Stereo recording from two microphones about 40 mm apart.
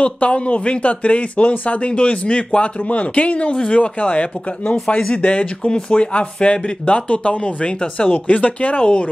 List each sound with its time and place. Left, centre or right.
0.0 s speech: left
5.7 s speech: left
8.1 s speech: left